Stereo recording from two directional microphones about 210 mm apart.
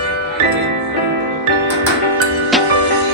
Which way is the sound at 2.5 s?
Centre (ahead or behind).